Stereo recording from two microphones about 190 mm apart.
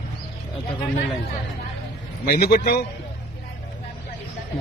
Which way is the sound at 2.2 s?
50° left (ahead or behind).